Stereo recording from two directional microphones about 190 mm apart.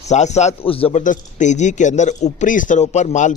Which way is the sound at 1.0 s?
40° left (ahead or behind).